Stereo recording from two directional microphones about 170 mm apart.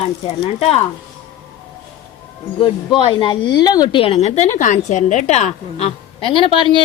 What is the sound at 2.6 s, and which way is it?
Speech, 30° left (ahead or behind).